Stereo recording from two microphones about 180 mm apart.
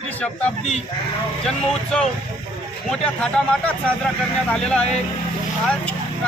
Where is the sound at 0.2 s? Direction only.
10° left (ahead or behind).